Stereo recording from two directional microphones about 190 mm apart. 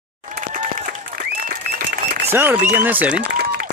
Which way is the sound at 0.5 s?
45° right (ahead or behind).